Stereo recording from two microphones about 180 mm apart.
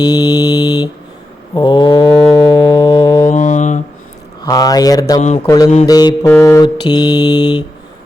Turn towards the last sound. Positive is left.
turn(degrees=25)  # may be behind; listen again after turning